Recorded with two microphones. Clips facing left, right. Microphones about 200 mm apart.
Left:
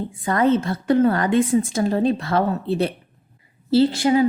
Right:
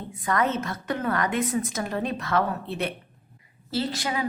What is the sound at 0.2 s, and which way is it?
A woman's voice, 30° left (ahead or behind).